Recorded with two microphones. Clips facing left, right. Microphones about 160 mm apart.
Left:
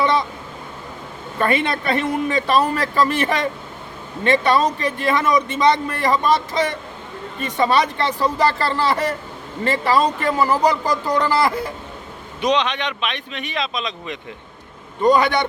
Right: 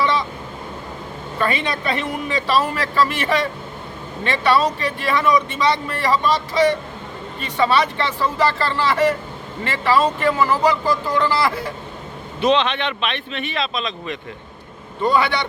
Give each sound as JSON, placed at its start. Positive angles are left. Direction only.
{"t": 0.0, "sound": "vehicle", "side_deg": 45}
{"t": 1.4, "sound": "a man's voice", "side_deg": 50}
{"t": 12.4, "sound": "speech", "side_deg": 15}
{"t": 15.1, "sound": "a man's voice", "side_deg": 45}